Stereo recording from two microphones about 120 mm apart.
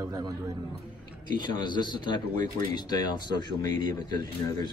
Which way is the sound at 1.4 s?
40° left (ahead or behind).